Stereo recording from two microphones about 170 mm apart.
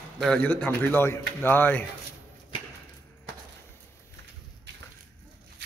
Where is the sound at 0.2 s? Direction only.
5° left (ahead or behind).